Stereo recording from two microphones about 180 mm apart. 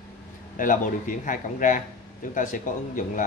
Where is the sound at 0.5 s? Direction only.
45° left (ahead or behind).